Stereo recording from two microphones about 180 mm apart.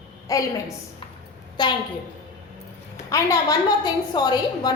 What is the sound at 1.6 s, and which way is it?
Speech, 25° left (ahead or behind).